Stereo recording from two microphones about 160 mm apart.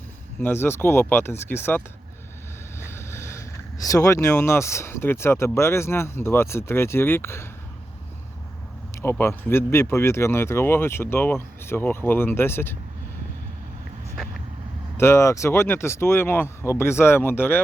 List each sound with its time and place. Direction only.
0.4 s speech: 15° left (ahead or behind)
2.9 s speech: 15° left (ahead or behind)
9.0 s speech: 15° left (ahead or behind)
14.9 s speech: 15° left (ahead or behind)